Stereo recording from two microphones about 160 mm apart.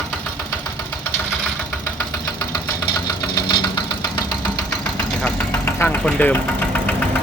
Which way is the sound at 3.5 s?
30° left (ahead or behind).